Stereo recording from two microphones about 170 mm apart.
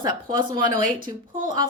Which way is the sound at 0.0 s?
25° right (ahead or behind).